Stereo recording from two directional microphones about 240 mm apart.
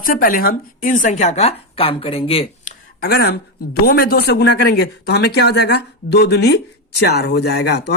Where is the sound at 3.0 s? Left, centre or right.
Left.